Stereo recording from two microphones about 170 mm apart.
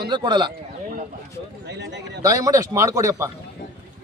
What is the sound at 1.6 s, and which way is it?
Speech, 90° right.